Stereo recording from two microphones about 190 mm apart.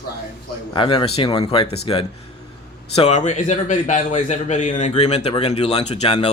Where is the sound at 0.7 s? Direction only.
25° left (ahead or behind).